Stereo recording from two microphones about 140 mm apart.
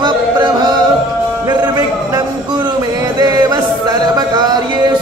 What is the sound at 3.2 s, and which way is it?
Music, 30° right (ahead or behind).